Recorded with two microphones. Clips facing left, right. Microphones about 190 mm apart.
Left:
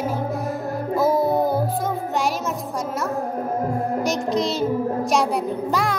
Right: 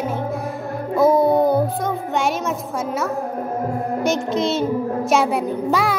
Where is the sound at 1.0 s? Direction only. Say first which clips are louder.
Right 5 dB; centre (ahead or behind).